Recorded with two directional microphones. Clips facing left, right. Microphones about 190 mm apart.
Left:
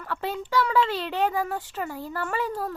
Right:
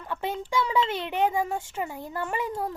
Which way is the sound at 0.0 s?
20° right (ahead or behind).